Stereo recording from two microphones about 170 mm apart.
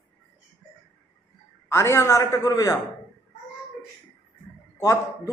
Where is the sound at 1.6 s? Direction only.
15° left (ahead or behind).